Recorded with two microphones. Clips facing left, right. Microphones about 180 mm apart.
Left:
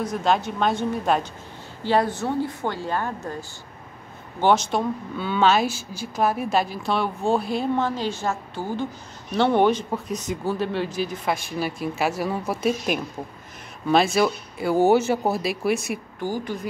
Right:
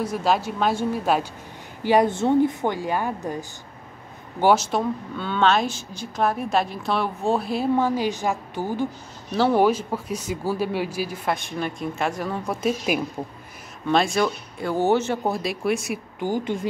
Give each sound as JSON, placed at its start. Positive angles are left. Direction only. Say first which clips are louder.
{"t": 0.0, "sound": "speech", "louder": "even", "side_deg": -5}
{"t": 1.8, "sound": "speech", "louder": "right 3 dB", "side_deg": -15}
{"t": 9.3, "sound": "speech", "louder": "even", "side_deg": -5}
{"t": 16.2, "sound": "speech", "louder": "right 4 dB", "side_deg": -20}